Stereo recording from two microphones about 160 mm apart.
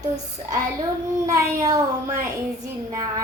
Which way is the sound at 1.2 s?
20° right (ahead or behind).